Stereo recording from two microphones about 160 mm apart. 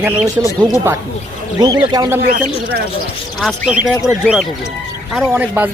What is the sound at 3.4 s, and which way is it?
Speech, centre (ahead or behind).